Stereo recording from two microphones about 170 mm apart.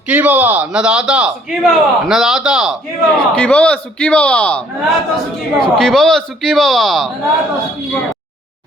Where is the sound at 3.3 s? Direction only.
5° left (ahead or behind).